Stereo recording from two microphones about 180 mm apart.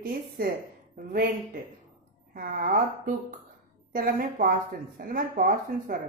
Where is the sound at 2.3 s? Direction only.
55° right (ahead or behind).